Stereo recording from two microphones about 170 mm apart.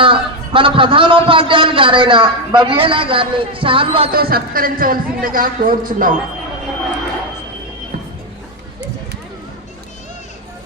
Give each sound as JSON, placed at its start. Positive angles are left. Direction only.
{"t": 0.0, "sound": "a man's voice", "side_deg": -30}
{"t": 4.1, "sound": "a man's voice", "side_deg": -60}